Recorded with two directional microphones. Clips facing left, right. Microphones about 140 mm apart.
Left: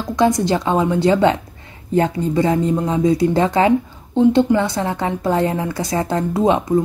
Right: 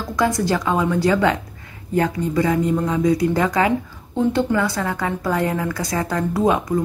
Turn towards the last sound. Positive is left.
turn(degrees=25)  # may be behind; listen again after turning